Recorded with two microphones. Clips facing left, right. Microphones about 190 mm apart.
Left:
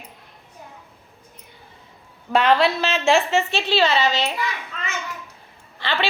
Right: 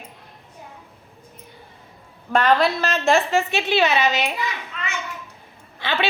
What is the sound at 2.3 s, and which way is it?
Speech, centre (ahead or behind).